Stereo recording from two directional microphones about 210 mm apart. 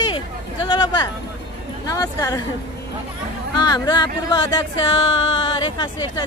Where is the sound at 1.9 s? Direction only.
15° left (ahead or behind).